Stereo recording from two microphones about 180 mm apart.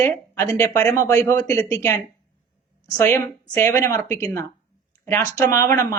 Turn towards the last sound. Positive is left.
turn(degrees=15)  # may be behind; listen again after turning